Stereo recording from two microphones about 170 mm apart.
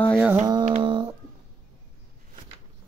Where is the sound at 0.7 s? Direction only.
30° right (ahead or behind).